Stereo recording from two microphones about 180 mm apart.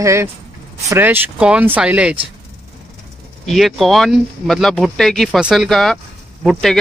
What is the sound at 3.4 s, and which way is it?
Speech, centre (ahead or behind).